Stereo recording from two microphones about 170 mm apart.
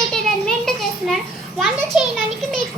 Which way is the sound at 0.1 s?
5° left (ahead or behind).